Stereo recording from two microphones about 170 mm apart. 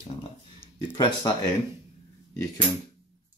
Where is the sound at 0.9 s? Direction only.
25° left (ahead or behind).